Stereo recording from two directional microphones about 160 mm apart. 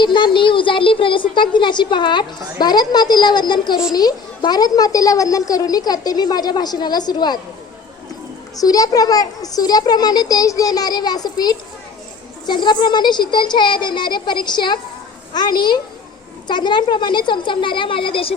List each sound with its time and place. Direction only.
0.0 s a woman's voice: 30° left (ahead or behind)
8.5 s a woman's voice: 25° left (ahead or behind)